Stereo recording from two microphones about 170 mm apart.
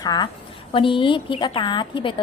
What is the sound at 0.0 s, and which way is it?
A woman's voice, 25° left (ahead or behind).